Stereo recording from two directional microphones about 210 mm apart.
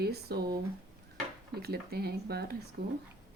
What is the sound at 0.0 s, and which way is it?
A woman's voice, 50° right (ahead or behind).